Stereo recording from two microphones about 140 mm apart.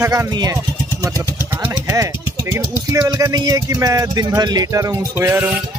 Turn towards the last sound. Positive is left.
turn(degrees=-10)  # may be behind; listen again after turning